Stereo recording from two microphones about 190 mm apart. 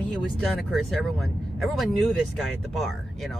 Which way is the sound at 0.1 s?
Centre (ahead or behind).